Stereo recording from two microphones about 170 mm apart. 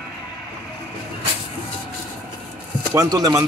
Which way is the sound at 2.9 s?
20° right (ahead or behind).